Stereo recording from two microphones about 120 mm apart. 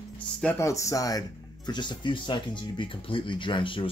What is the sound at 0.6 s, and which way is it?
Speech, 25° left (ahead or behind).